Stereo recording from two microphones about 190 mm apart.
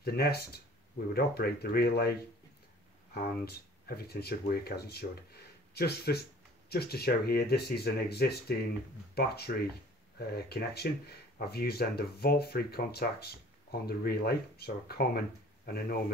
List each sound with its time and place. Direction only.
0.0 s speech: 55° left (ahead or behind)
3.2 s speech: 55° left (ahead or behind)